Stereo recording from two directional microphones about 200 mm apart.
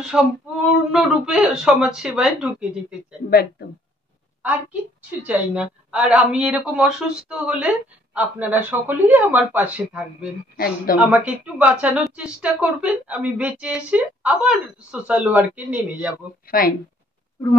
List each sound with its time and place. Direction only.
0.0 s speech: centre (ahead or behind)
3.3 s a woman's voice: 50° left (ahead or behind)
5.2 s speech: 5° right (ahead or behind)
16.4 s speech: 45° left (ahead or behind)